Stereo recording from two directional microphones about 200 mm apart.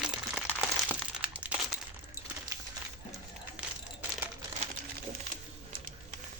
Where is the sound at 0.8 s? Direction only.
5° right (ahead or behind).